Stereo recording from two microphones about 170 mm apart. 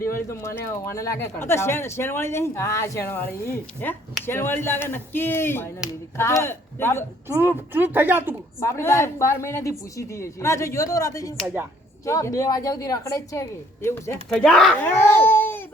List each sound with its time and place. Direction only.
0.2 s speech: 15° left (ahead or behind)
7.3 s speech: 10° right (ahead or behind)
8.6 s a woman's voice: 15° left (ahead or behind)
14.3 s a child's voice: centre (ahead or behind)